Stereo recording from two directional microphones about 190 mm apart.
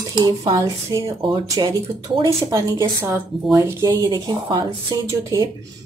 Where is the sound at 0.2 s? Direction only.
20° right (ahead or behind).